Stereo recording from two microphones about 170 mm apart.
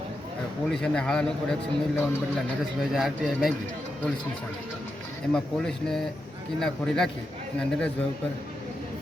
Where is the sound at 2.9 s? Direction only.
Centre (ahead or behind).